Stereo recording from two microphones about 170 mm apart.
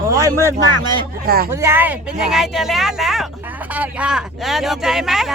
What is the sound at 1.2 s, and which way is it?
Speech, 65° right (ahead or behind).